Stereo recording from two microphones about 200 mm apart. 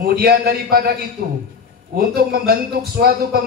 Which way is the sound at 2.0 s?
50° right (ahead or behind).